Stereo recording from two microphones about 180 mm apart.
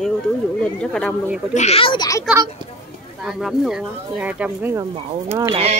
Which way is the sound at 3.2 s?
Centre (ahead or behind).